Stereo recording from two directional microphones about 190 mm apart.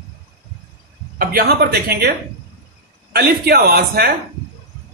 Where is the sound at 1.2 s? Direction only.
50° right (ahead or behind).